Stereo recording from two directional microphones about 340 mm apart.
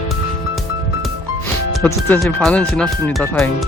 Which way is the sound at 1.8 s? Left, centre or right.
Centre.